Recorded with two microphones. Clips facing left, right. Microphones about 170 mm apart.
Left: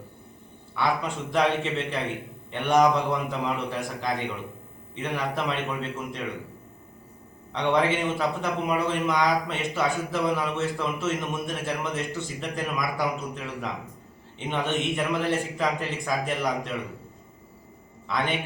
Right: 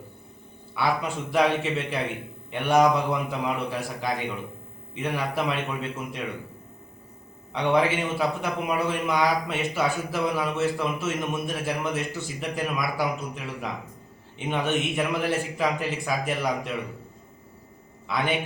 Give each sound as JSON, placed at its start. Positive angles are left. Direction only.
{"t": 0.8, "sound": "a man's voice", "side_deg": -5}
{"t": 7.5, "sound": "a man's voice", "side_deg": -5}
{"t": 18.1, "sound": "a man's voice", "side_deg": -5}